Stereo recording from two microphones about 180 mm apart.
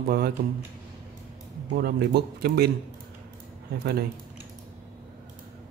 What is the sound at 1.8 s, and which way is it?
Speech, 65° right (ahead or behind).